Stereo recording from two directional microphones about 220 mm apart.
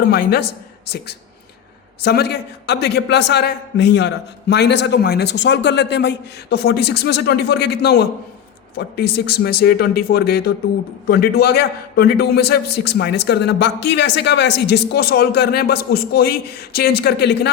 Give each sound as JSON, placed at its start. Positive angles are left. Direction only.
{"t": 0.1, "sound": "a man's voice", "side_deg": 45}